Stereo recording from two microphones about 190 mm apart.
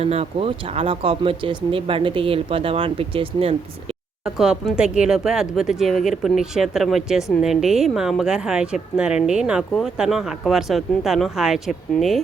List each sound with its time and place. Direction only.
0.0 s speech: 30° right (ahead or behind)
4.2 s a woman's voice: centre (ahead or behind)